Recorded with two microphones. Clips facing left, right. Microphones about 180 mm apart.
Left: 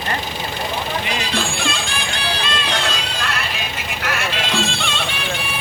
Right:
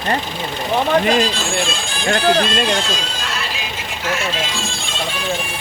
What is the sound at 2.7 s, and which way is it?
Neigh, 65° left (ahead or behind).